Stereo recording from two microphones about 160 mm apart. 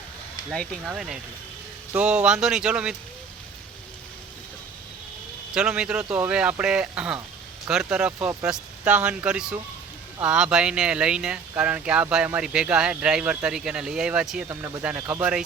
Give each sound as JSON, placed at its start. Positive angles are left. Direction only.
{"t": 0.9, "sound": "speech", "side_deg": -5}
{"t": 5.5, "sound": "speech", "side_deg": -5}